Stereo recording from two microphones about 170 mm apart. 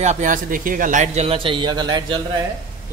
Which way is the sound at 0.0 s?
45° right (ahead or behind).